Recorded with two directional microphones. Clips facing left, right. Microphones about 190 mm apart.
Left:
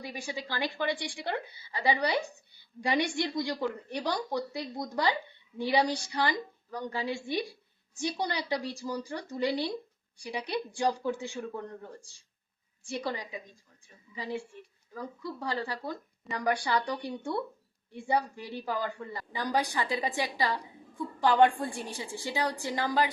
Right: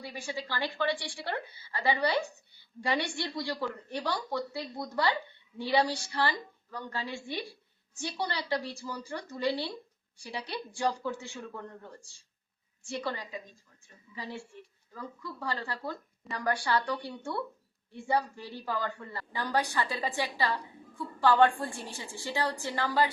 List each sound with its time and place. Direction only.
0.0 s a woman's voice: 15° left (ahead or behind)
11.0 s a woman's voice: 15° left (ahead or behind)
12.9 s a woman's voice: 15° left (ahead or behind)
14.9 s a woman's voice: 15° left (ahead or behind)